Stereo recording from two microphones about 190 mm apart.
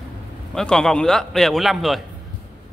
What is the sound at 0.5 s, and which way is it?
A man's voice, 5° left (ahead or behind).